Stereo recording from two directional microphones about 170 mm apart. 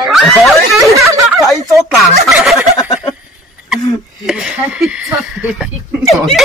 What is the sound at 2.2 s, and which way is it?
Speech, centre (ahead or behind).